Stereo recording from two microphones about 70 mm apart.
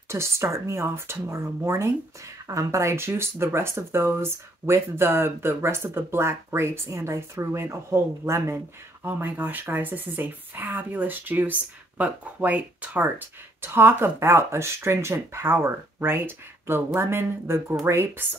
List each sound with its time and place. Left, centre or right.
0.1 s speech: right
9.0 s speech: right